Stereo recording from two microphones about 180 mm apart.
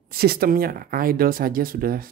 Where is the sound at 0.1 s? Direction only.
55° right (ahead or behind).